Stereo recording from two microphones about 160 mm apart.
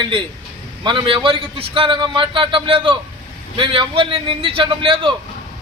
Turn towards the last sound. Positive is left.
turn(degrees=-30)  # may be behind; listen again after turning